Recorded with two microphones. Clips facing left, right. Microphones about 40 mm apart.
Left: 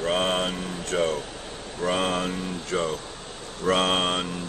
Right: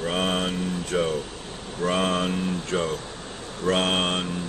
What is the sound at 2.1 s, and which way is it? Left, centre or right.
Speech, centre.